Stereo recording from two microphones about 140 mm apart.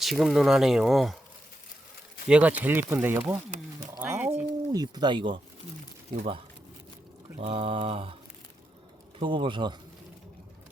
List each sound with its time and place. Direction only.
0.0 s speech: centre (ahead or behind)
2.2 s speech: 10° right (ahead or behind)
4.0 s a sound: 15° right (ahead or behind)
4.7 s speech: 30° right (ahead or behind)
7.3 s mantra: 45° right (ahead or behind)
9.1 s speech: 35° right (ahead or behind)